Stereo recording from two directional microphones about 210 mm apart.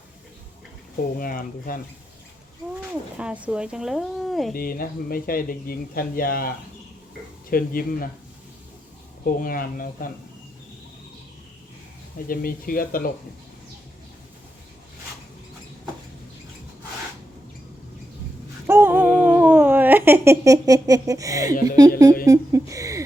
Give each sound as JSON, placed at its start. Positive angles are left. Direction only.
{"t": 1.2, "sound": "speech", "side_deg": 40}
{"t": 3.2, "sound": "speech", "side_deg": -5}
{"t": 4.5, "sound": "speech", "side_deg": 45}
{"t": 7.5, "sound": "speech", "side_deg": 45}
{"t": 9.2, "sound": "speech", "side_deg": 45}
{"t": 12.3, "sound": "speech", "side_deg": 45}
{"t": 18.7, "sound": "humming", "side_deg": -10}
{"t": 21.8, "sound": "speech", "side_deg": -15}